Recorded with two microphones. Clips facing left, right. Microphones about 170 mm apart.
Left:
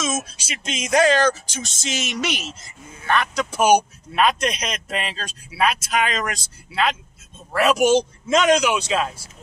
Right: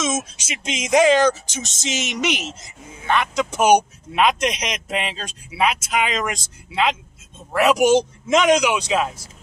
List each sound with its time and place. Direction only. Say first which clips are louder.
0.1 s a man's voice: right 2 dB; 20° right (ahead or behind)